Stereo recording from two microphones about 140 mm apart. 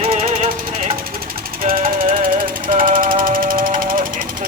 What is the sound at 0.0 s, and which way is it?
Music, 45° right (ahead or behind).